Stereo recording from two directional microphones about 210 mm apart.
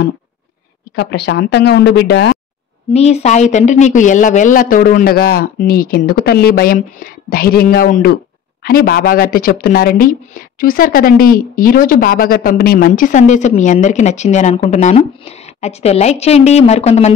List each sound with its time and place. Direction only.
0.9 s speech: 50° left (ahead or behind)
2.9 s speech: 30° left (ahead or behind)